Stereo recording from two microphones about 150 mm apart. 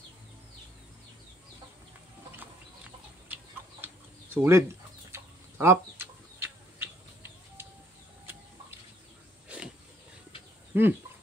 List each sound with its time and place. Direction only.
3.8 s bird: 15° right (ahead or behind)
5.1 s chicken: 15° right (ahead or behind)
9.5 s a sound: 10° right (ahead or behind)
10.7 s speech: 15° right (ahead or behind)